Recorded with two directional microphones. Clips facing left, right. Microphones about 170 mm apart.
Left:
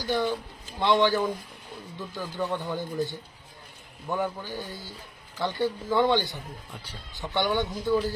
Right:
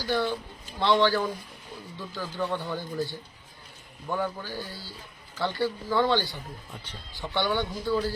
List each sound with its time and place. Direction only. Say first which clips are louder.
0.0 s speech: left 1 dB; 15° left (ahead or behind)